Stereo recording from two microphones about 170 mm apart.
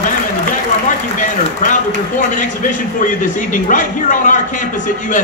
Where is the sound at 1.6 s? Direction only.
50° left (ahead or behind).